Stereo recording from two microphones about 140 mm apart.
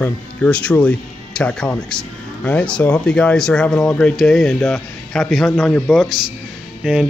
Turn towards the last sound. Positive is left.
turn(degrees=-5)  # may be behind; listen again after turning